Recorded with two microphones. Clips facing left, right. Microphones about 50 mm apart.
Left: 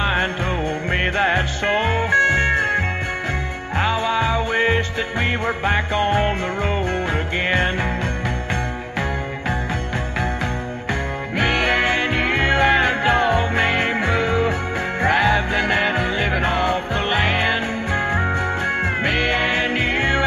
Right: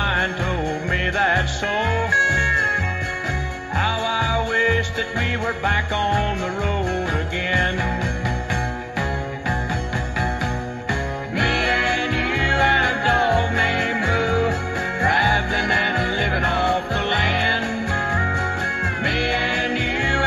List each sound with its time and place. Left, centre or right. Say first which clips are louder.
0.0 s music: left 1 dB; left
7.4 s music: even; left
11.3 s music: left 1 dB; left